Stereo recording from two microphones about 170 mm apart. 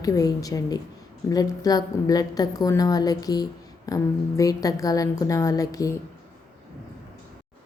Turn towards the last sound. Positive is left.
turn(degrees=20)  # may be behind; listen again after turning